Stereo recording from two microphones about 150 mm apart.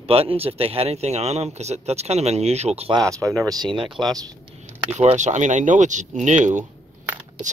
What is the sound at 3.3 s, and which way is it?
Speech, 25° right (ahead or behind).